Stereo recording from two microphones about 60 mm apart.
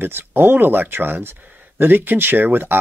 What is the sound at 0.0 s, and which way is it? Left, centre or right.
Speech, right.